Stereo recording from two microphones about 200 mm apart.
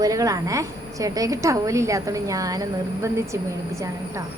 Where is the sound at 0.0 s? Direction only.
15° right (ahead or behind).